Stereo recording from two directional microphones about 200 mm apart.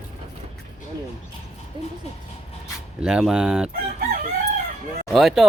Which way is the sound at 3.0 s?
5° right (ahead or behind).